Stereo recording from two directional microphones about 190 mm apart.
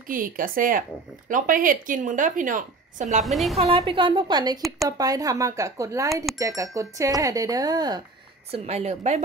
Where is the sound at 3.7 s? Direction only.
25° right (ahead or behind).